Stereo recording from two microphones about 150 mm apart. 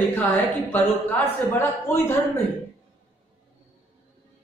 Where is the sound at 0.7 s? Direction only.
10° left (ahead or behind).